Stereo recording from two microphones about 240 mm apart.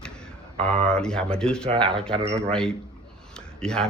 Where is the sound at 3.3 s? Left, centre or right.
Centre.